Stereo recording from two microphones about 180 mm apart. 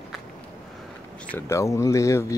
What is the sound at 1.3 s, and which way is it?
Speech, 15° left (ahead or behind).